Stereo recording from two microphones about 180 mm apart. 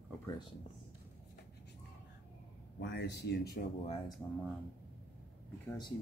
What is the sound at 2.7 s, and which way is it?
Speech, 75° left (ahead or behind).